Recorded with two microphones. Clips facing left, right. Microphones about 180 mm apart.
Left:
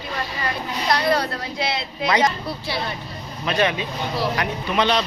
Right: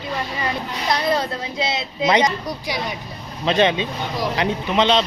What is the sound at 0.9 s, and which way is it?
Speech, 20° right (ahead or behind).